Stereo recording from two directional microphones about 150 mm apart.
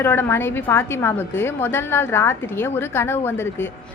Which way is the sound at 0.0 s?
15° left (ahead or behind).